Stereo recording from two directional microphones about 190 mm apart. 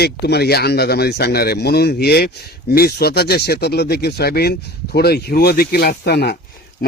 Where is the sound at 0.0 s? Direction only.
60° left (ahead or behind).